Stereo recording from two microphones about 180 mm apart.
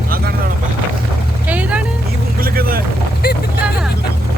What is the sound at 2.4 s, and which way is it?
Vehicle, 55° right (ahead or behind).